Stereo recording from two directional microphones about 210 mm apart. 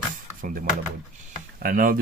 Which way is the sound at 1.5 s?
40° right (ahead or behind).